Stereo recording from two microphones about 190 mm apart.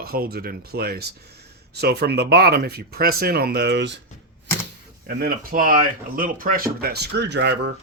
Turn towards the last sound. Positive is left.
turn(degrees=-65)  # may be behind; listen again after turning